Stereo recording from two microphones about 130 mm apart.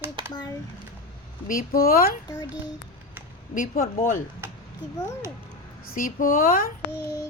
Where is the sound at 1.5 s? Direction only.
90° left.